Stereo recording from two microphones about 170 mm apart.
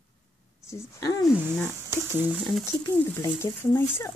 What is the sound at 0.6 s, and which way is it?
Speech, 15° left (ahead or behind).